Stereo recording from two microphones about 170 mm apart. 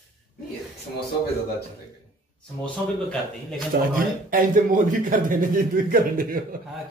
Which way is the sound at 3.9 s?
55° right (ahead or behind).